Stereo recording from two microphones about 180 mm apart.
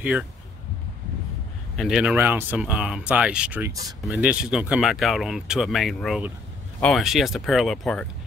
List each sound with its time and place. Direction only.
1.8 s speech: 5° right (ahead or behind)